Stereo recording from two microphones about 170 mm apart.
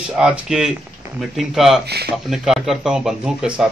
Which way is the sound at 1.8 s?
70° right (ahead or behind).